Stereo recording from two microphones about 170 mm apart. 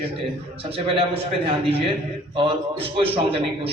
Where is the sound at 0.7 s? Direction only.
35° right (ahead or behind).